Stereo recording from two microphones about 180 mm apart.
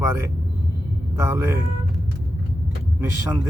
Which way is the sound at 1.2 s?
10° right (ahead or behind).